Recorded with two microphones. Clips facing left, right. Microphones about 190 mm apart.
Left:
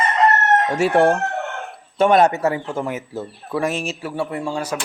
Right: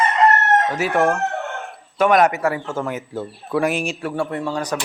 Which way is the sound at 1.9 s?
30° left (ahead or behind).